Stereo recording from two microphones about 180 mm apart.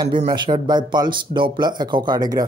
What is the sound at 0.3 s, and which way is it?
Speech, 25° right (ahead or behind).